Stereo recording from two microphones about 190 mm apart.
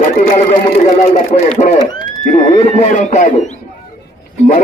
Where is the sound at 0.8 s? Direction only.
40° left (ahead or behind).